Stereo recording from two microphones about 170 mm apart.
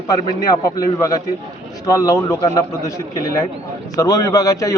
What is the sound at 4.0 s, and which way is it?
Speech, 20° left (ahead or behind).